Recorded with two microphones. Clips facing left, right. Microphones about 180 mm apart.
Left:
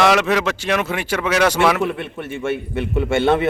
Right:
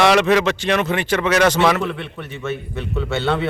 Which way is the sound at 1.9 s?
50° left (ahead or behind).